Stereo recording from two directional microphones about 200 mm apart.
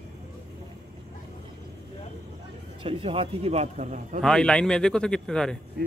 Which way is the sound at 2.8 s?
30° right (ahead or behind).